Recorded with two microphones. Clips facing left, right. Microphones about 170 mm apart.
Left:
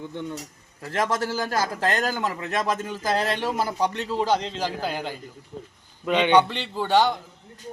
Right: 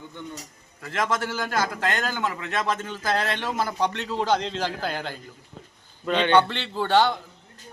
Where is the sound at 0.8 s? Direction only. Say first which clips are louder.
Left 1 dB; 40° left (ahead or behind).